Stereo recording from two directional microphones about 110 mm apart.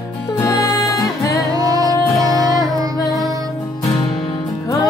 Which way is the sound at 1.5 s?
35° right (ahead or behind).